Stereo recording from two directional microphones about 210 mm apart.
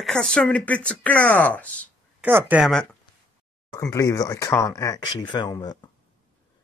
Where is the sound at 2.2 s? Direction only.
10° right (ahead or behind).